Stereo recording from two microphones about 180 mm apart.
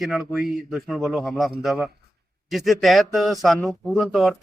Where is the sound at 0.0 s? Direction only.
Centre (ahead or behind).